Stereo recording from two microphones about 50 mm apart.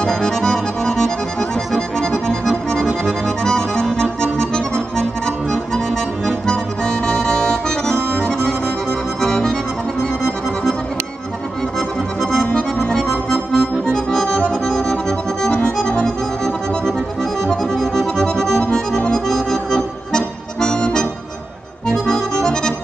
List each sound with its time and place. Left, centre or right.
0.0 s accordion: centre
2.0 s music: centre
3.1 s accordion: centre
9.2 s music: centre
12.4 s accordion: centre